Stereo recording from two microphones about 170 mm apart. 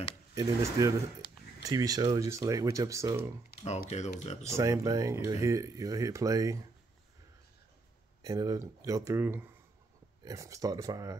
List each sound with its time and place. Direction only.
0.3 s speech: 15° right (ahead or behind)
3.5 s typing: 65° left (ahead or behind)
3.9 s speech: 40° left (ahead or behind)
4.5 s speech: 20° right (ahead or behind)
8.2 s speech: 20° right (ahead or behind)